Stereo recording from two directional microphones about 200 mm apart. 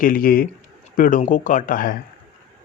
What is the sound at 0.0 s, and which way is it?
Speech, 45° left (ahead or behind).